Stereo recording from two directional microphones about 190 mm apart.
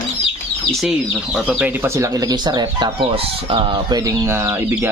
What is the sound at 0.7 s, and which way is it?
Speech, 5° right (ahead or behind).